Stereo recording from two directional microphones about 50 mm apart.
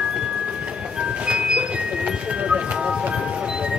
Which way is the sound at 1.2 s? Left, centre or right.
Right.